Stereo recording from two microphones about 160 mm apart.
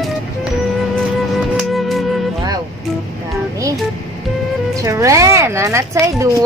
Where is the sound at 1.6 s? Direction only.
Centre (ahead or behind).